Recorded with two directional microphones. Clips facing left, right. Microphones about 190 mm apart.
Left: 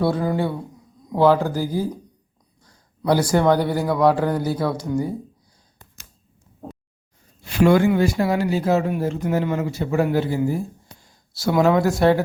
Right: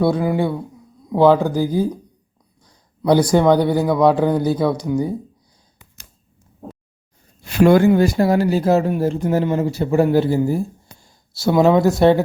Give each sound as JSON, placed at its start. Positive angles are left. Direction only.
{"t": 0.0, "sound": "speech", "side_deg": -15}
{"t": 3.1, "sound": "speech", "side_deg": -20}
{"t": 7.6, "sound": "speech", "side_deg": -40}